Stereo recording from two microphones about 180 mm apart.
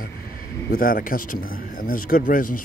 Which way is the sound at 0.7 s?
55° left (ahead or behind).